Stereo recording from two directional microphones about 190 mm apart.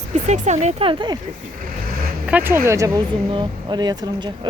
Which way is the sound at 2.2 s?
10° right (ahead or behind).